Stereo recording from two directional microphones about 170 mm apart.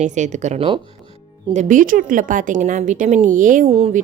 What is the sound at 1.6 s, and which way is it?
Speech, 50° right (ahead or behind).